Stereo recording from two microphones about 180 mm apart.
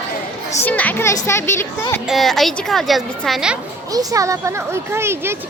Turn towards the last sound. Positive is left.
turn(degrees=-15)  # may be behind; listen again after turning